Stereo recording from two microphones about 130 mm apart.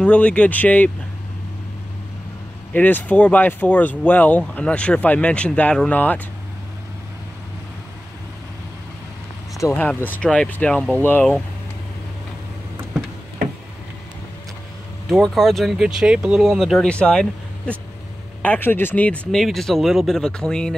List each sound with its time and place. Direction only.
0.0 s speech: 10° left (ahead or behind)
2.7 s speech: 10° left (ahead or behind)
9.6 s speech: 20° left (ahead or behind)
15.0 s speech: centre (ahead or behind)